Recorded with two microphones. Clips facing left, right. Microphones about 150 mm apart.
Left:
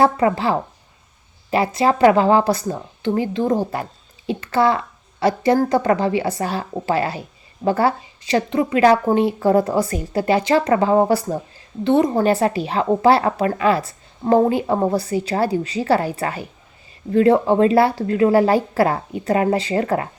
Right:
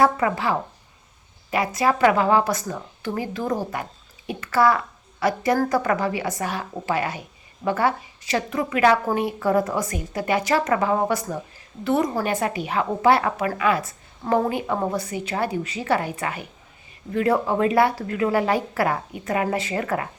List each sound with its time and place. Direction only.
0.0 s a woman's voice: 30° left (ahead or behind)